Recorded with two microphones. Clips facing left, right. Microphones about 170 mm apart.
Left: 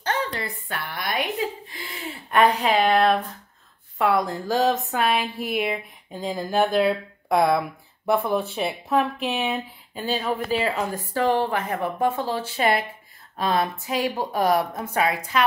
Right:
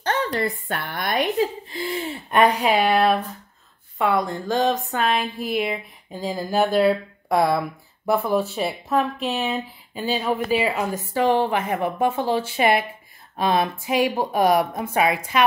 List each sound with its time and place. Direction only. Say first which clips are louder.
0.0 s a woman's voice: right 4 dB; 45° right (ahead or behind)
1.7 s a woman's voice: right 8 dB; 30° right (ahead or behind)